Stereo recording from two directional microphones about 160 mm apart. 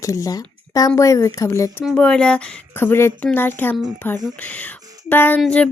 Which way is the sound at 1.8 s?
Centre (ahead or behind).